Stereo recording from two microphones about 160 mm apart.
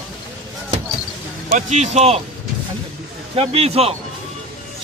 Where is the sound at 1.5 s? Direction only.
45° right (ahead or behind).